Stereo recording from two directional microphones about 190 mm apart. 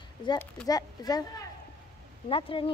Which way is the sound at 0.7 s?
20° left (ahead or behind).